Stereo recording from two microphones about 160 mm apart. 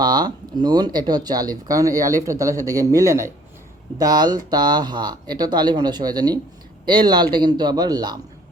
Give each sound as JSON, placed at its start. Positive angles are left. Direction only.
{"t": 0.0, "sound": "speech", "side_deg": -25}